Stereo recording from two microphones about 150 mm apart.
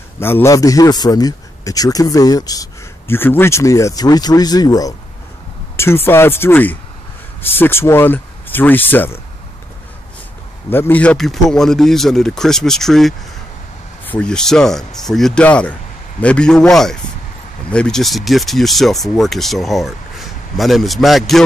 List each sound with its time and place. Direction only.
0.2 s a man's voice: 15° left (ahead or behind)
10.7 s speech: 15° left (ahead or behind)